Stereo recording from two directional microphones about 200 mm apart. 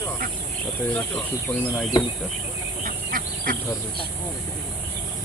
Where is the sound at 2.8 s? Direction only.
45° right (ahead or behind).